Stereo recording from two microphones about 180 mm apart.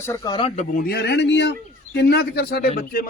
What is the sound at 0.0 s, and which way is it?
Speech, 20° left (ahead or behind).